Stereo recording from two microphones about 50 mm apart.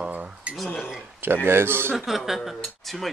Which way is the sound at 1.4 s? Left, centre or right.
Right.